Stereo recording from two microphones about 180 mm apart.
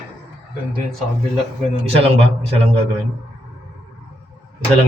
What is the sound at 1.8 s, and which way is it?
Speech, 35° right (ahead or behind).